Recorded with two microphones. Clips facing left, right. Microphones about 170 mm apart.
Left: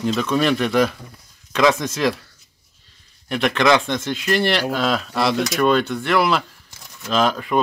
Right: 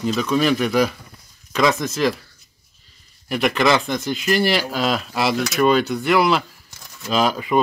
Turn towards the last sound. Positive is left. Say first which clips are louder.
# even
turn(degrees=-5)  # may be behind; listen again after turning